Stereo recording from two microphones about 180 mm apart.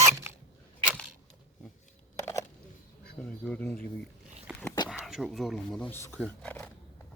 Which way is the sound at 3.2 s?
5° left (ahead or behind).